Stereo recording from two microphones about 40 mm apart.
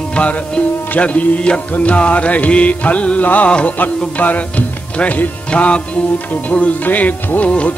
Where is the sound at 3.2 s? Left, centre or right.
Left.